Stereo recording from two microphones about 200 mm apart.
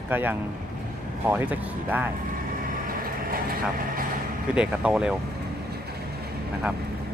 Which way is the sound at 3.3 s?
45° right (ahead or behind).